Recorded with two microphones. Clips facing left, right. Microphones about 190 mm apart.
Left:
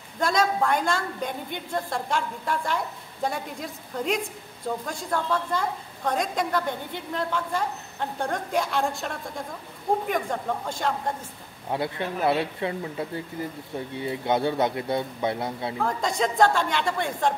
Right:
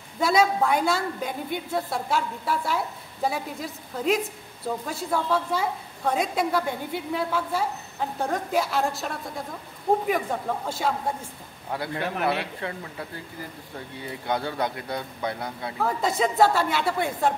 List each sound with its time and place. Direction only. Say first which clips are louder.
0.2 s a woman's voice: right 2 dB; 5° right (ahead or behind)
10.3 s a woman's voice: even; 5° right (ahead or behind)
11.7 s speech: left 1 dB; 20° left (ahead or behind)
15.8 s a woman's voice: right 2 dB; 5° right (ahead or behind)